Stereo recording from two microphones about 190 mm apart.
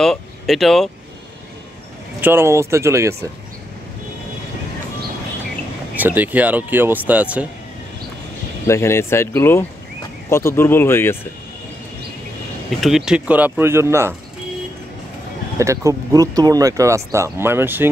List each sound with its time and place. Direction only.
0.0 s speech: centre (ahead or behind)
2.2 s speech: 15° right (ahead or behind)
5.9 s speech: 10° right (ahead or behind)
8.6 s speech: 15° left (ahead or behind)
12.8 s speech: 5° right (ahead or behind)
15.6 s speech: 15° right (ahead or behind)